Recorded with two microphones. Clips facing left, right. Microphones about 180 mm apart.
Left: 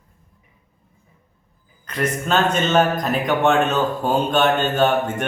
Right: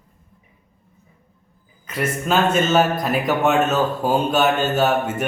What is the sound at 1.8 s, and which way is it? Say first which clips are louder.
A man's voice: even; 5° right (ahead or behind).